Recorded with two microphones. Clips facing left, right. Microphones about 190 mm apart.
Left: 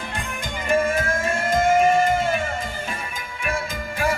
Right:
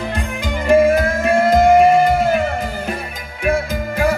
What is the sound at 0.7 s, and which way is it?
Music, 65° right (ahead or behind).